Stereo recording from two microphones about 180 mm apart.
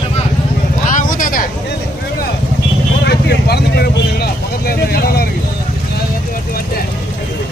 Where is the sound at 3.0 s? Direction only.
65° left (ahead or behind).